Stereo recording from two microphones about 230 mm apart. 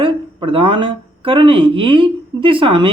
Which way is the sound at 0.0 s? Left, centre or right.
Right.